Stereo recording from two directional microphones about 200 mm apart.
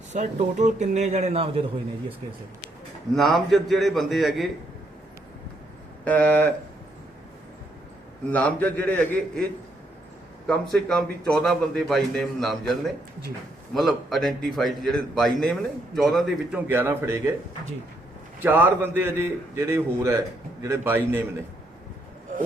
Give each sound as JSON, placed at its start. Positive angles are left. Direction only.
{"t": 0.1, "sound": "speech", "side_deg": -35}
{"t": 3.2, "sound": "a man's voice", "side_deg": 0}
{"t": 6.1, "sound": "a man's voice", "side_deg": 5}
{"t": 8.3, "sound": "a man's voice", "side_deg": 5}
{"t": 10.4, "sound": "a man's voice", "side_deg": 5}
{"t": 13.7, "sound": "a man's voice", "side_deg": 0}
{"t": 18.4, "sound": "a man's voice", "side_deg": -10}